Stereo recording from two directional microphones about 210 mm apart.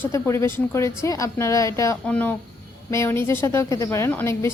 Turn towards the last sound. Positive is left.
turn(degrees=10)  # may be behind; listen again after turning